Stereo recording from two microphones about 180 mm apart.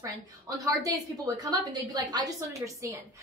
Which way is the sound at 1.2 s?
20° right (ahead or behind).